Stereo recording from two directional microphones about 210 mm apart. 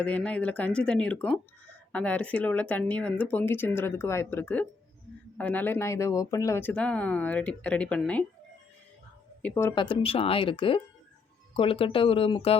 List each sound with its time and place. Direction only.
0.0 s speech: 5° left (ahead or behind)
9.4 s speech: 10° left (ahead or behind)
9.7 s speech: 25° left (ahead or behind)